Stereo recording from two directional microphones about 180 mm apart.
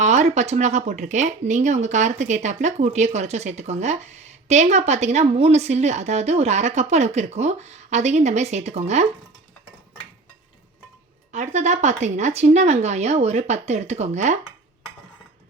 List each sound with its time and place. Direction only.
0.0 s speech: 40° right (ahead or behind)
11.3 s speech: 40° right (ahead or behind)